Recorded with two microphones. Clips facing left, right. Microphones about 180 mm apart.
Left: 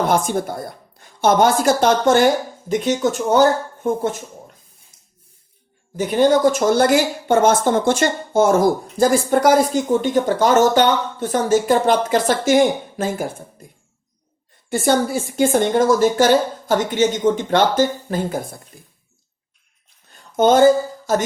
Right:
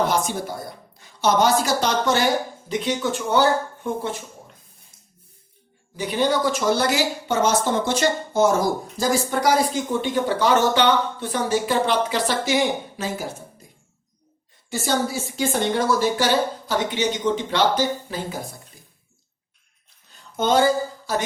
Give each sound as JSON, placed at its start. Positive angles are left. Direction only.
{"t": 0.1, "sound": "a woman's voice", "side_deg": 50}
{"t": 6.0, "sound": "a woman's voice", "side_deg": 50}
{"t": 14.7, "sound": "a woman's voice", "side_deg": 55}
{"t": 20.3, "sound": "a woman's voice", "side_deg": 50}